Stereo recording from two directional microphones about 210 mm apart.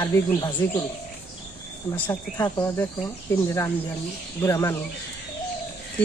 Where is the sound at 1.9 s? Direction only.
15° left (ahead or behind).